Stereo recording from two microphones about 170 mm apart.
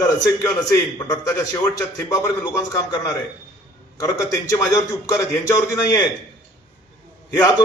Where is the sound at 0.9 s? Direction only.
20° left (ahead or behind).